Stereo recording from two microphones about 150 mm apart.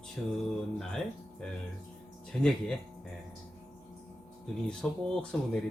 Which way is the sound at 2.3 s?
5° left (ahead or behind).